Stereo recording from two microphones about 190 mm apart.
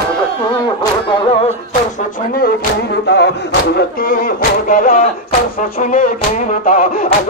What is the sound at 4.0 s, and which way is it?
Music, 50° left (ahead or behind).